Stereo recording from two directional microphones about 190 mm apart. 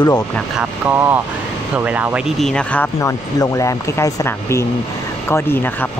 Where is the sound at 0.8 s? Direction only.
10° right (ahead or behind).